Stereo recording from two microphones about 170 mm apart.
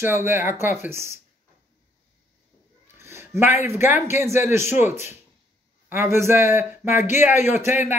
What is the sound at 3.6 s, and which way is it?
Speech, 15° right (ahead or behind).